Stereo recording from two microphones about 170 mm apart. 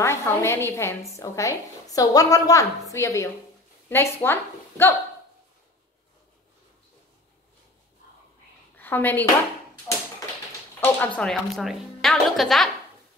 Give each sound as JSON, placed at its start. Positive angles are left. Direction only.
{"t": 0.0, "sound": "a woman's voice", "side_deg": 15}
{"t": 8.7, "sound": "speech", "side_deg": 10}
{"t": 10.8, "sound": "speech", "side_deg": 10}